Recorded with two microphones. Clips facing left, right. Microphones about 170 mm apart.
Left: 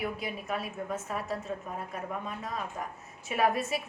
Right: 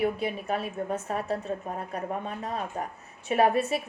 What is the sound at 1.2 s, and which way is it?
Speech, 65° right (ahead or behind).